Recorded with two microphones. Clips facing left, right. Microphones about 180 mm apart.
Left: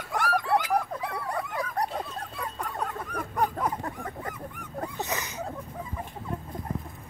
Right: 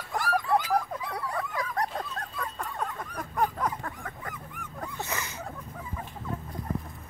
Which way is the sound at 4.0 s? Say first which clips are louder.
Left 4 dB; 35° left (ahead or behind).